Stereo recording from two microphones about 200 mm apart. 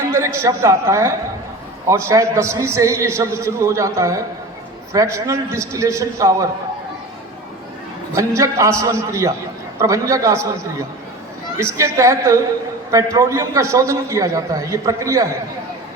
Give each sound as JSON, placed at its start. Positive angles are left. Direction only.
{"t": 0.1, "sound": "a man's voice", "side_deg": -15}
{"t": 8.1, "sound": "a man's voice", "side_deg": -15}